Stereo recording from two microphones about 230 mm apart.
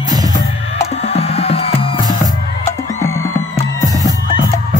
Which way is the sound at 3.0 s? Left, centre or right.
Centre.